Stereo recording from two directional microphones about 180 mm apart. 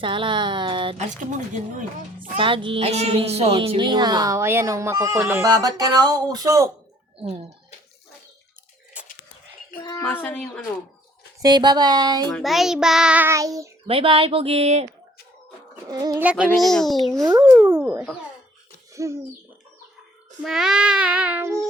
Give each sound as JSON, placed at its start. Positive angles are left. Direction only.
{"t": 0.0, "sound": "a woman's voice", "side_deg": -25}
{"t": 0.9, "sound": "speech", "side_deg": -45}
{"t": 2.4, "sound": "a woman's voice", "side_deg": -30}
{"t": 10.0, "sound": "a child's voice", "side_deg": 10}
{"t": 11.4, "sound": "a woman's voice", "side_deg": -25}
{"t": 12.3, "sound": "child singing", "side_deg": 0}
{"t": 13.8, "sound": "speech", "side_deg": -30}
{"t": 15.9, "sound": "a woman's voice", "side_deg": -20}
{"t": 16.2, "sound": "a sound", "side_deg": -5}
{"t": 16.6, "sound": "child singing", "side_deg": 0}
{"t": 17.4, "sound": "a sound", "side_deg": -10}
{"t": 20.4, "sound": "child singing", "side_deg": 0}